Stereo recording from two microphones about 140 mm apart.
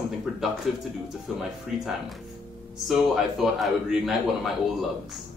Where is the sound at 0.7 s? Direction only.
Centre (ahead or behind).